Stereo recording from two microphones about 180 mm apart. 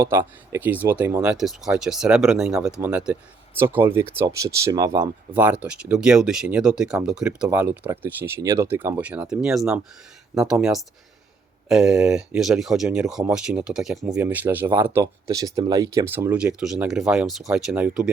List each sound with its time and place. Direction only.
0.0 s speech: 15° right (ahead or behind)
5.3 s speech: 10° right (ahead or behind)
7.4 s speech: 15° right (ahead or behind)